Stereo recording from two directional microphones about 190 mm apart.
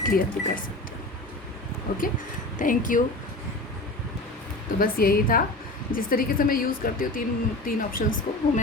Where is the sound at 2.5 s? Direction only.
45° left (ahead or behind).